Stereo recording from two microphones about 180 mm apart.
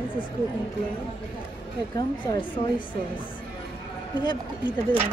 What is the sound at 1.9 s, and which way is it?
A woman's voice, 25° left (ahead or behind).